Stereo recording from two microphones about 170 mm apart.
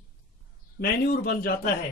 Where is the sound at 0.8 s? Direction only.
65° left (ahead or behind).